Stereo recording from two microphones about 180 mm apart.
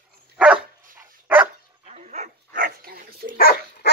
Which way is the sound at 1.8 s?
40° right (ahead or behind).